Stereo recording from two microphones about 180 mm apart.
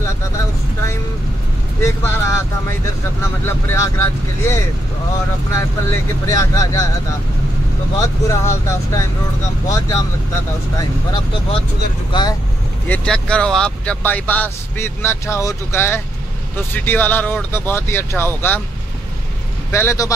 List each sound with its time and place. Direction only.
1.8 s speech: 15° left (ahead or behind)
8.0 s speech: 15° left (ahead or behind)
12.1 s speech: 25° left (ahead or behind)
12.8 s speech: 5° left (ahead or behind)
19.7 s speech: 15° left (ahead or behind)